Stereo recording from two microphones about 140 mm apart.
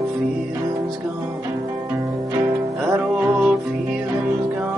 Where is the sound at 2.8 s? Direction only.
10° right (ahead or behind).